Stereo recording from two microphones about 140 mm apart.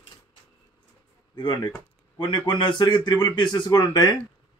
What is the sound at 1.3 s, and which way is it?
A man's voice, 30° left (ahead or behind).